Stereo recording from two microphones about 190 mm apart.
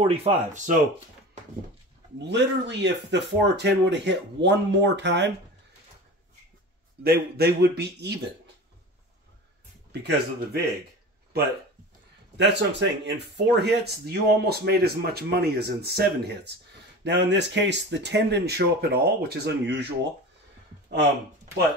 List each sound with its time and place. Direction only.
0.0 s speech: 30° right (ahead or behind)
2.1 s speech: 65° right (ahead or behind)
7.0 s speech: 55° right (ahead or behind)
10.0 s speech: 55° right (ahead or behind)
12.4 s speech: 65° right (ahead or behind)